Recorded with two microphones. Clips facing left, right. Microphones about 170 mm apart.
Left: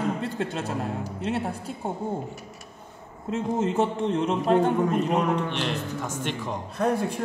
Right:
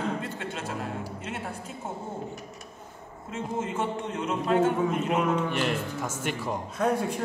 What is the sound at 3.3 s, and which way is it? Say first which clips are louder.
A man's voice: left 6 dB; 40° left (ahead or behind).